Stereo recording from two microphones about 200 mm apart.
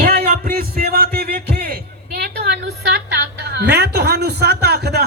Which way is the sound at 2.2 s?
55° right (ahead or behind).